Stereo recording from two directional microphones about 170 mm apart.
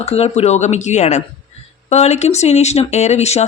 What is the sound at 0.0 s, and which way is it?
Speech, 35° left (ahead or behind).